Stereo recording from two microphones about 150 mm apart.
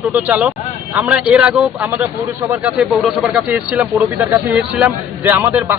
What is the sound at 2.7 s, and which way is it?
Speech, centre (ahead or behind).